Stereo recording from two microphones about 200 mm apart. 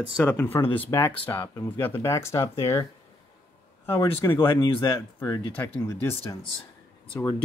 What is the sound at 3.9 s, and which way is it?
Speech, 15° left (ahead or behind).